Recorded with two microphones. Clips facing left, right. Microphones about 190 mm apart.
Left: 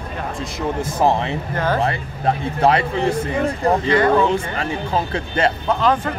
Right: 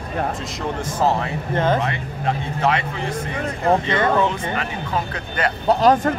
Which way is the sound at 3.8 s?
25° right (ahead or behind).